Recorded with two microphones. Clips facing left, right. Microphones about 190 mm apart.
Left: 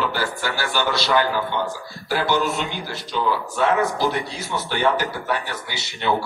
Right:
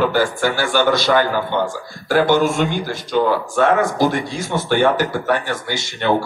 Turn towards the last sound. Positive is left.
turn(degrees=-50)  # may be behind; listen again after turning